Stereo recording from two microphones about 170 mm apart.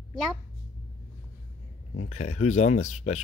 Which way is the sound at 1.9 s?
40° left (ahead or behind).